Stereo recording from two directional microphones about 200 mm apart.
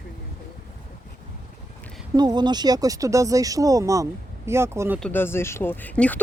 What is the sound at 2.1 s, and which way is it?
Speech, 20° right (ahead or behind).